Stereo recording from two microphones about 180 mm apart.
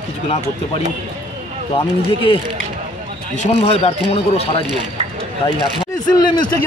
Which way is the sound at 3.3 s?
35° left (ahead or behind).